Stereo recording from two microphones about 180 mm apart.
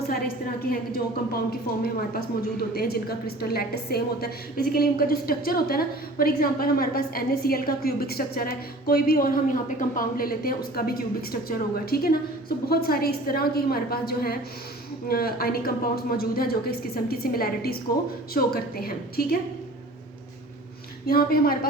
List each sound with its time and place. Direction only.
0.1 s a woman's voice: 55° left (ahead or behind)
21.1 s a woman's voice: 55° left (ahead or behind)